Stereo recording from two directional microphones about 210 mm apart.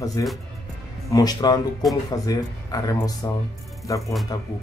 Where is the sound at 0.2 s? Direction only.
15° left (ahead or behind).